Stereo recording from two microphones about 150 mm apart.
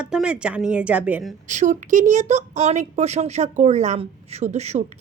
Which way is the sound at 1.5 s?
55° right (ahead or behind).